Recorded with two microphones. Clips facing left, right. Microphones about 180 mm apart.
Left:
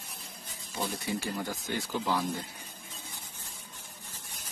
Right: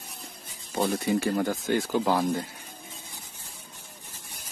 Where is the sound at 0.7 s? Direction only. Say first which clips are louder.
Right 9 dB; 60° right (ahead or behind).